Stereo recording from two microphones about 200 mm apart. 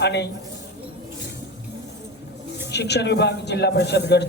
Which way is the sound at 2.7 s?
55° left (ahead or behind).